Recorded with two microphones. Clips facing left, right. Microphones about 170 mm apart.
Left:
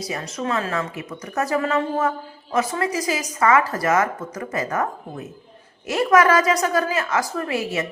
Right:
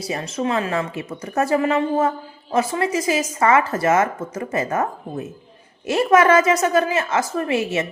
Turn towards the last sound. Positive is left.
turn(degrees=-25)  # may be behind; listen again after turning